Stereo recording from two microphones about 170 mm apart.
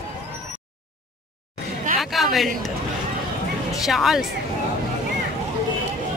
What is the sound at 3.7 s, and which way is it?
Speech, centre (ahead or behind).